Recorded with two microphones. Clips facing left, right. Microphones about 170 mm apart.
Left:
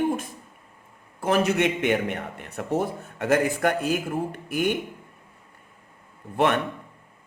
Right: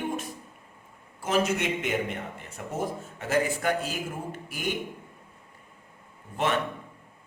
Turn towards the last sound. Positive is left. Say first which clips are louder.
# left 5 dB
turn(degrees=60)  # may be behind; listen again after turning